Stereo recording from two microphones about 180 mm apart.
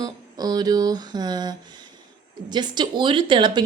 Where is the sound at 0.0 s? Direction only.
20° right (ahead or behind).